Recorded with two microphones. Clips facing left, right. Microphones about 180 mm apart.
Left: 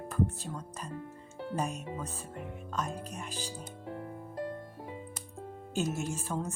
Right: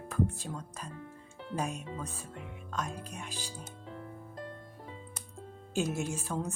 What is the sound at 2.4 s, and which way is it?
Speech, 45° left (ahead or behind).